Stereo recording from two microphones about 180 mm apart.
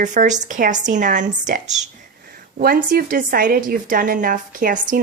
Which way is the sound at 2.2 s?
55° right (ahead or behind).